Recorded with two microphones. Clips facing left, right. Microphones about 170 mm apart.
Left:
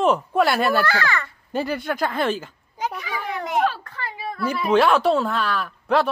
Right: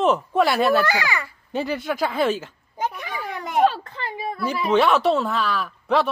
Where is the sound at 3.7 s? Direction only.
25° right (ahead or behind).